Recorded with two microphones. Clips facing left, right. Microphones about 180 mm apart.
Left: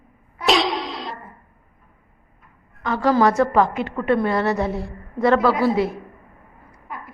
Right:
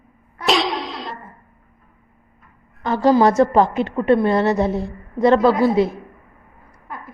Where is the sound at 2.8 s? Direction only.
30° right (ahead or behind).